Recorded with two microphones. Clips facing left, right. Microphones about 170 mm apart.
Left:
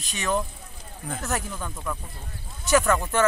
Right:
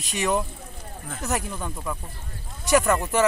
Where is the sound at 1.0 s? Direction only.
Centre (ahead or behind).